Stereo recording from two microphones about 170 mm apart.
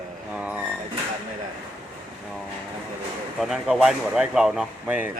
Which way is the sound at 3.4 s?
5° right (ahead or behind).